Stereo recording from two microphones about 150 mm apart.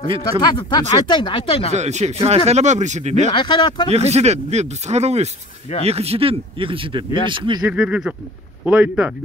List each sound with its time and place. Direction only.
0.6 s speech: 30° left (ahead or behind)
1.7 s speech: 50° right (ahead or behind)
3.3 s speech: 30° left (ahead or behind)
3.9 s speech: 45° right (ahead or behind)
7.7 s speech: 5° right (ahead or behind)